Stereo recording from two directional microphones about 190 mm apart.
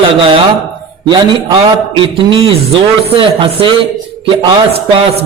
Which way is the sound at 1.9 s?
25° right (ahead or behind).